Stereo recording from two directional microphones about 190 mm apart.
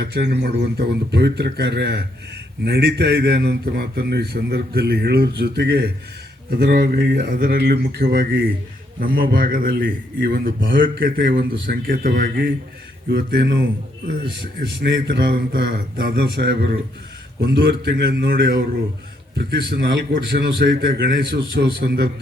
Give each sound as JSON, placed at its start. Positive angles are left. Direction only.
{"t": 0.0, "sound": "a man's voice", "side_deg": -60}
{"t": 13.1, "sound": "a man's voice", "side_deg": -60}
{"t": 14.7, "sound": "a man's voice", "side_deg": -70}